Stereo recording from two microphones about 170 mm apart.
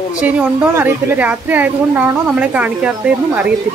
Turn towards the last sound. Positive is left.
turn(degrees=-10)  # may be behind; listen again after turning